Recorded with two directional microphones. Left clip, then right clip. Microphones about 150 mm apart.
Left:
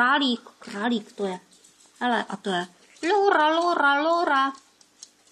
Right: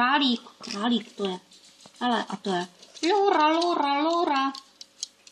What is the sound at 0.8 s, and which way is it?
Speech, 15° right (ahead or behind).